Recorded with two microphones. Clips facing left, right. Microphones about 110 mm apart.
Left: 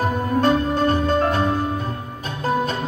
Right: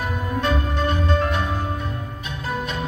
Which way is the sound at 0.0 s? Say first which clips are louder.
Left 6 dB; 35° left (ahead or behind).